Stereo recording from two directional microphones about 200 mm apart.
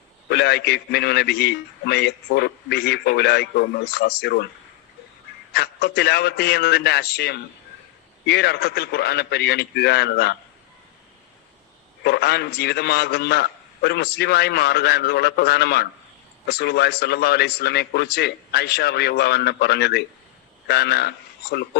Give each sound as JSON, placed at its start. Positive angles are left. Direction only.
{"t": 0.3, "sound": "a man's voice", "side_deg": 55}
{"t": 5.5, "sound": "a man's voice", "side_deg": 50}
{"t": 12.0, "sound": "a man's voice", "side_deg": 55}